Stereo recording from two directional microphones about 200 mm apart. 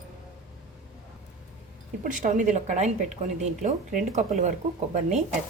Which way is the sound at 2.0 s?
40° right (ahead or behind).